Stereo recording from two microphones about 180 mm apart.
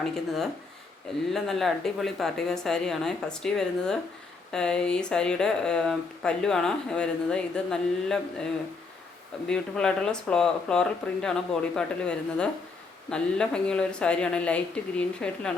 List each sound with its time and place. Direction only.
0.0 s speech: centre (ahead or behind)
9.5 s speech: 5° left (ahead or behind)